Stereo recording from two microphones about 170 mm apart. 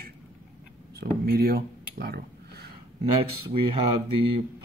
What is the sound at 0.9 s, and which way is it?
Speech, 65° right (ahead or behind).